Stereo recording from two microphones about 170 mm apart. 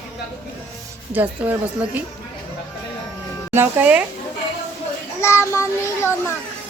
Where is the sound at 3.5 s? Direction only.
10° right (ahead or behind).